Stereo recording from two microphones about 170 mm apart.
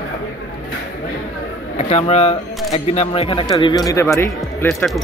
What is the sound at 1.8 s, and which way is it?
A man's voice, 40° left (ahead or behind).